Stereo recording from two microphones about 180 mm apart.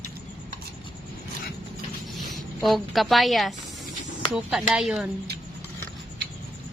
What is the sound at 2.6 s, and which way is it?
A woman's voice, centre (ahead or behind).